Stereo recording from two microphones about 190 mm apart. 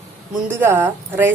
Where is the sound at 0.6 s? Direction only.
10° right (ahead or behind).